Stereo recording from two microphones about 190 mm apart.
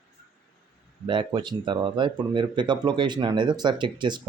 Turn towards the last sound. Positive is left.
turn(degrees=-25)  # may be behind; listen again after turning